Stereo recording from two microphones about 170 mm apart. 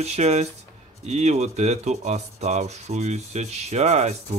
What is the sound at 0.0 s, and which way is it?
Rub, 40° right (ahead or behind).